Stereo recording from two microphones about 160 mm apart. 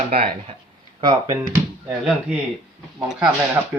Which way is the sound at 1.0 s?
20° right (ahead or behind).